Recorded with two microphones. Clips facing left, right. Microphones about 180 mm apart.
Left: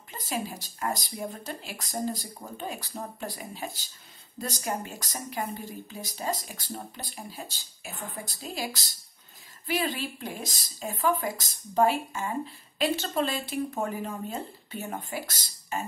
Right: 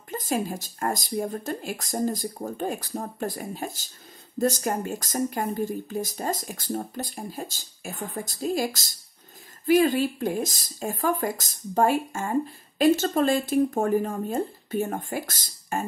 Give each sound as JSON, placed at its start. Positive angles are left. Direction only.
{"t": 0.1, "sound": "speech", "side_deg": -45}